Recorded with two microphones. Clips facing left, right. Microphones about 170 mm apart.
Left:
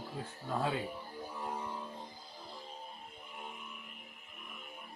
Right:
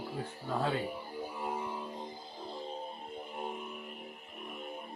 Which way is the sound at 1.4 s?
10° right (ahead or behind).